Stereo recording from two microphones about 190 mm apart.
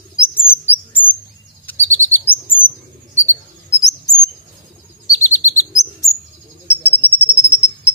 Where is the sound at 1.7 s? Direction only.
10° left (ahead or behind).